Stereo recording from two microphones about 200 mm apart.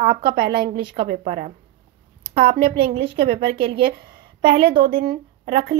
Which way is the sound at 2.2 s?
30° right (ahead or behind).